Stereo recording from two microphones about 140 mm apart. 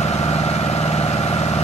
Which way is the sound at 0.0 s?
50° left (ahead or behind).